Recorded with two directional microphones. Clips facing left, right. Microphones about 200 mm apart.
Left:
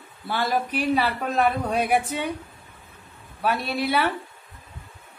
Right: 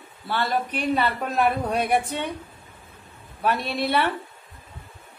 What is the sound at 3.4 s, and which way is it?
Speech, 5° left (ahead or behind).